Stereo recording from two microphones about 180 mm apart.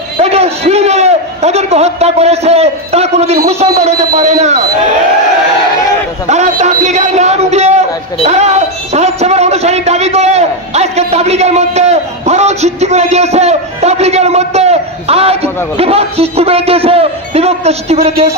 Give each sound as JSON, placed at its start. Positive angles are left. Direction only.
{"t": 0.2, "sound": "a man's voice", "side_deg": -35}
{"t": 6.2, "sound": "a man's voice", "side_deg": -40}